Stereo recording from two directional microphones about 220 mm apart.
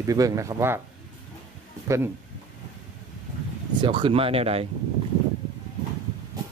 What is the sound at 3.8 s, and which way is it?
Speech, 20° right (ahead or behind).